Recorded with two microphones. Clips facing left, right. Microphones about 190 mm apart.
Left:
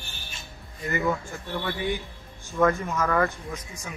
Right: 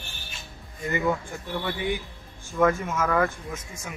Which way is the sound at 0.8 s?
15° right (ahead or behind).